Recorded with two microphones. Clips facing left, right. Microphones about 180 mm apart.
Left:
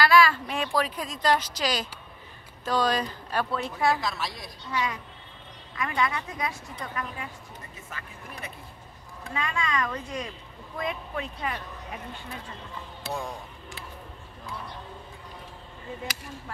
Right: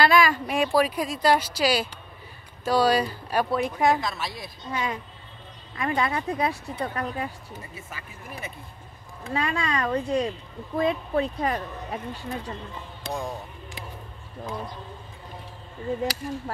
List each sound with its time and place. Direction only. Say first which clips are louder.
0.0 s a woman's voice: right 1 dB; 20° right (ahead or behind)
4.0 s a woman's voice: right 1 dB; centre (ahead or behind)
4.6 s speech: right 1 dB; 25° right (ahead or behind)
7.5 s a woman's voice: right 3 dB; 10° right (ahead or behind)
9.3 s speech: right 3 dB; 35° right (ahead or behind)
13.0 s speech: right 2 dB; 5° left (ahead or behind)
16.0 s speech: right 10 dB; 40° right (ahead or behind)